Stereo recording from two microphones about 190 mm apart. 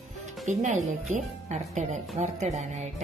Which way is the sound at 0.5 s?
40° right (ahead or behind).